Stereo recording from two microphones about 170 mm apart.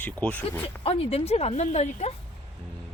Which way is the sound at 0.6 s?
35° left (ahead or behind).